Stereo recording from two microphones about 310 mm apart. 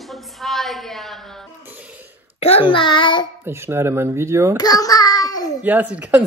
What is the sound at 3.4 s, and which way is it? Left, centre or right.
Speech, centre.